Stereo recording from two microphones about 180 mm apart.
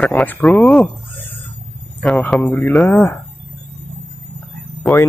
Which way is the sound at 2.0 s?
5° left (ahead or behind).